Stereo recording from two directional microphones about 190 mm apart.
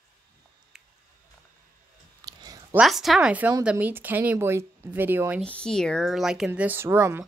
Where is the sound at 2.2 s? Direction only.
20° right (ahead or behind).